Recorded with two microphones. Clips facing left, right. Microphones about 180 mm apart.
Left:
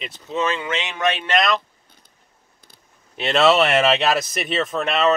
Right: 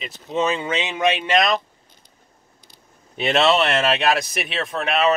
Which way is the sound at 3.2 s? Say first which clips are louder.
Left 1 dB; centre (ahead or behind).